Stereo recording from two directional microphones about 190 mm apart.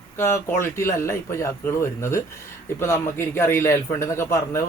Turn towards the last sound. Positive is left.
turn(degrees=15)  # may be behind; listen again after turning